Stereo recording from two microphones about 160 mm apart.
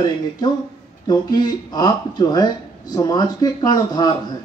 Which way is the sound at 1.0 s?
25° left (ahead or behind).